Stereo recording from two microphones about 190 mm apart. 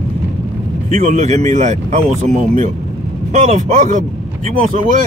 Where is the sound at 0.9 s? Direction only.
35° right (ahead or behind).